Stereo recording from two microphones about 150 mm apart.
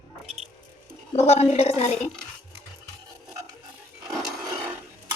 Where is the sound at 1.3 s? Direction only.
45° left (ahead or behind).